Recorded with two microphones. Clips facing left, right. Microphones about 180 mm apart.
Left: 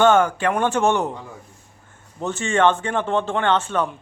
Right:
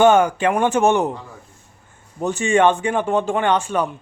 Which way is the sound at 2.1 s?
15° right (ahead or behind).